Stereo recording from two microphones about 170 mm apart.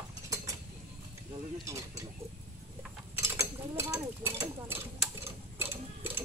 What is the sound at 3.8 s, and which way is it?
Horse, 15° right (ahead or behind).